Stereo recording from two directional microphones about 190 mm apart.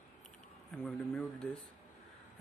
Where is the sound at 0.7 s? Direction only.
5° left (ahead or behind).